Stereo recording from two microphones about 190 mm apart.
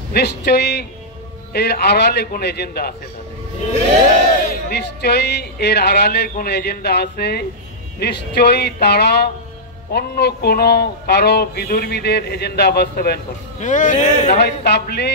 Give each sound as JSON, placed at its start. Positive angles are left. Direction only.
{"t": 0.1, "sound": "speech", "side_deg": 60}
{"t": 4.6, "sound": "speech", "side_deg": 60}
{"t": 13.6, "sound": "speech", "side_deg": 40}
{"t": 14.4, "sound": "speech", "side_deg": 60}